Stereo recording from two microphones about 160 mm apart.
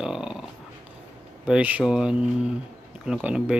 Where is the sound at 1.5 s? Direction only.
10° right (ahead or behind).